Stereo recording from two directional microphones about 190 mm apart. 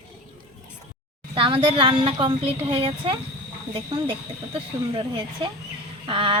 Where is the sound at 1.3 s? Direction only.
30° right (ahead or behind).